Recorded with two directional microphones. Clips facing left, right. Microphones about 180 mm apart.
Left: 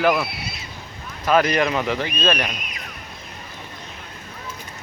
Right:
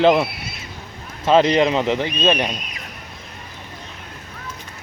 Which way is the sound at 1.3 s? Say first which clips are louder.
Right 4 dB; 25° right (ahead or behind).